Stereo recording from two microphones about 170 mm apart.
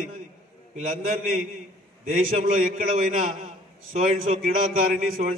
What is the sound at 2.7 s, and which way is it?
Speech, 50° right (ahead or behind).